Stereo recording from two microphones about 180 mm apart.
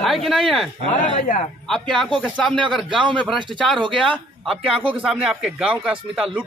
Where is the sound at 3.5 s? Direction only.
5° left (ahead or behind).